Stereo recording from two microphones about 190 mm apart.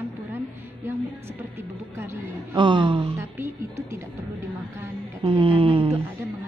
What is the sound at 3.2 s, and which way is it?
Speech, 10° right (ahead or behind).